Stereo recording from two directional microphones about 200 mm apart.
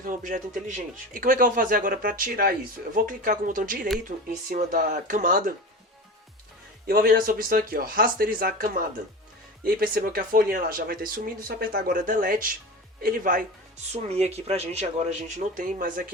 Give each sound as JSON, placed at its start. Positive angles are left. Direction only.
{"t": 0.0, "sound": "speech", "side_deg": -40}
{"t": 6.8, "sound": "speech", "side_deg": -50}
{"t": 13.9, "sound": "speech", "side_deg": -30}
{"t": 15.5, "sound": "speech", "side_deg": -45}